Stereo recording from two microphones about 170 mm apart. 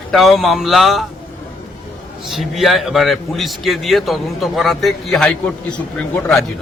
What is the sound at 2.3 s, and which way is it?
A man's voice, centre (ahead or behind).